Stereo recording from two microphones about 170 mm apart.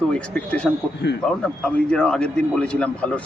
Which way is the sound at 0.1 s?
5° left (ahead or behind).